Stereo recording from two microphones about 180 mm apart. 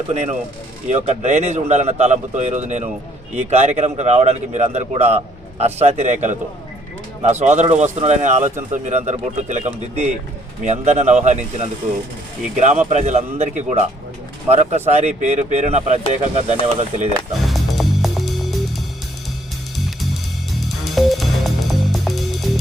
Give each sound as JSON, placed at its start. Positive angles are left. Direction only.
{"t": 0.1, "sound": "speech", "side_deg": -35}
{"t": 17.4, "sound": "music", "side_deg": 0}
{"t": 20.7, "sound": "music", "side_deg": 0}